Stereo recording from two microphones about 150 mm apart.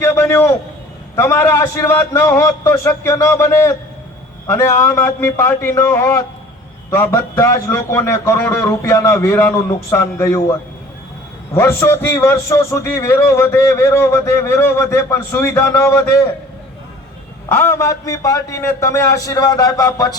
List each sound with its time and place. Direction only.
0.0 s a man's voice: 20° left (ahead or behind)
11.5 s a man's voice: 15° left (ahead or behind)
17.5 s a man's voice: 20° left (ahead or behind)